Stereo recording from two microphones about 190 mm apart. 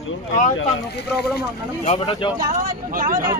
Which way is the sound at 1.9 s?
30° left (ahead or behind).